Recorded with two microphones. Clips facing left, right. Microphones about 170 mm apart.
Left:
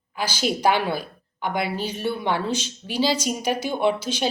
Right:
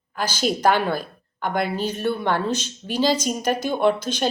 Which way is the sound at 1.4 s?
50° right (ahead or behind).